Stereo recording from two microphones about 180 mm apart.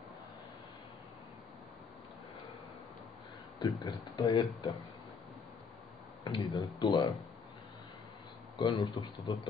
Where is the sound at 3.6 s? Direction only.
25° left (ahead or behind).